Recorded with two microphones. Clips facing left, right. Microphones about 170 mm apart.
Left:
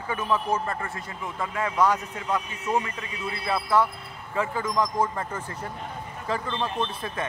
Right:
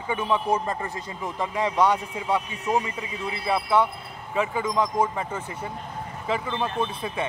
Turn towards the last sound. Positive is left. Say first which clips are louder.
# right 2 dB
turn(degrees=-10)  # may be behind; listen again after turning